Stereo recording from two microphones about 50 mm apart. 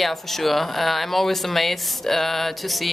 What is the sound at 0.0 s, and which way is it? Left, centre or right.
Speech, centre.